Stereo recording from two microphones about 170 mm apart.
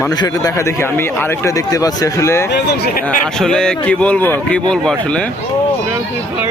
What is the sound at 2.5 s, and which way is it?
Speech, 70° left (ahead or behind).